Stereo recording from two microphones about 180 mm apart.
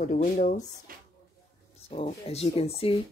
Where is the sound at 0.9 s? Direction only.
50° right (ahead or behind).